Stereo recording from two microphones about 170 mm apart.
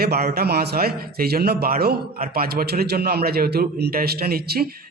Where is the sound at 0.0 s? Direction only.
65° right (ahead or behind).